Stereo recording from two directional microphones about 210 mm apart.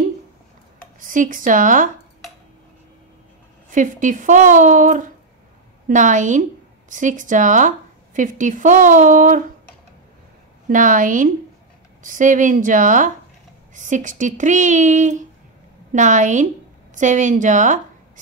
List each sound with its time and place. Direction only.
0.9 s speech: 40° right (ahead or behind)
3.7 s speech: 40° right (ahead or behind)
10.7 s speech: 40° right (ahead or behind)